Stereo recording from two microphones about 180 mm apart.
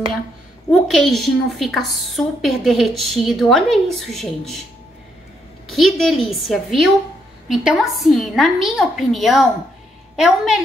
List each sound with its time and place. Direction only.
0.7 s a woman's voice: centre (ahead or behind)
5.7 s a woman's voice: centre (ahead or behind)